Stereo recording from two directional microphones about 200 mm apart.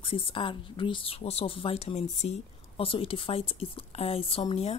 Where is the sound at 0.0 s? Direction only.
25° left (ahead or behind).